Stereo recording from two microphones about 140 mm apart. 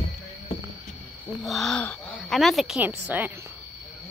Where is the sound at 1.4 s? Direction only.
Centre (ahead or behind).